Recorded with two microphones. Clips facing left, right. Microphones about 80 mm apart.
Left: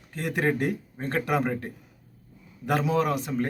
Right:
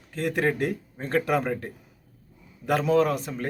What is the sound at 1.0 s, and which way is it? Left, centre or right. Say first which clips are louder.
Speech: right 3 dB; left.